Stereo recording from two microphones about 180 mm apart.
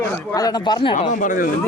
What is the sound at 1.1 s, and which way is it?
Speech, 45° left (ahead or behind).